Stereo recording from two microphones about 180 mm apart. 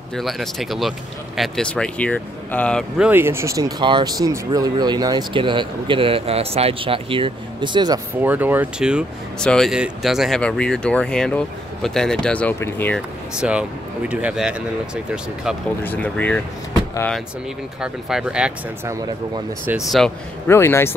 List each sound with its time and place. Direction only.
0.1 s speech: centre (ahead or behind)
3.0 s speech: 10° right (ahead or behind)
8.2 s speech: 10° right (ahead or behind); by 13.0 s 10° left (ahead or behind)
13.4 s speech: 5° right (ahead or behind)
15.8 s speech: 10° left (ahead or behind)
17.8 s speech: 5° right (ahead or behind)
20.4 s speech: 15° left (ahead or behind)